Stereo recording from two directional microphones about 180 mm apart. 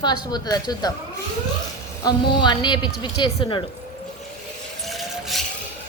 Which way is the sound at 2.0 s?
25° left (ahead or behind).